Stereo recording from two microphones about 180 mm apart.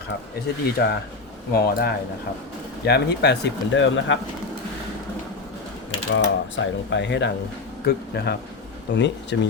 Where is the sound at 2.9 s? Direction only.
65° left (ahead or behind); by 4.1 s 90° left.